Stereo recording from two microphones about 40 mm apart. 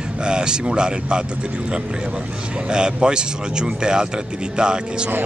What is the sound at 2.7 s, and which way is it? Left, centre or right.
A man's voice, right.